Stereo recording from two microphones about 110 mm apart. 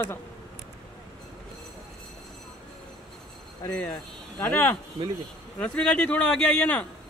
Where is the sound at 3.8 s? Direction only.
15° left (ahead or behind).